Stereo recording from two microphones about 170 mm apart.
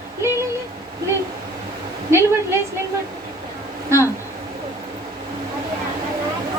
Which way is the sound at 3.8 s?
15° right (ahead or behind).